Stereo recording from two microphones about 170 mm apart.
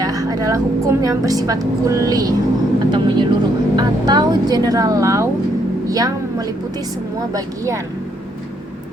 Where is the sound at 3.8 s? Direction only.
25° right (ahead or behind).